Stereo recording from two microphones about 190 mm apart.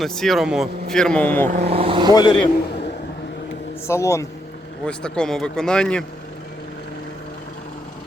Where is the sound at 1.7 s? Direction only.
30° right (ahead or behind).